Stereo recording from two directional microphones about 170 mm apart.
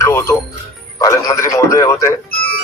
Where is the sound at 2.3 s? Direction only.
60° left (ahead or behind).